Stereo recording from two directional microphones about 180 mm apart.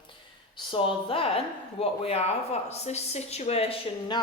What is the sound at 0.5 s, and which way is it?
A woman's voice, 30° left (ahead or behind).